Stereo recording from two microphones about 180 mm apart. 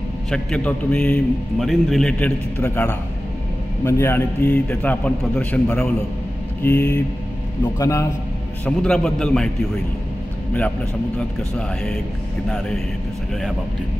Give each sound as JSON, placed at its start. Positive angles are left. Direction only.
{"t": 0.3, "sound": "a man's voice", "side_deg": 5}
{"t": 8.6, "sound": "a man's voice", "side_deg": 5}
{"t": 11.1, "sound": "a man's voice", "side_deg": 5}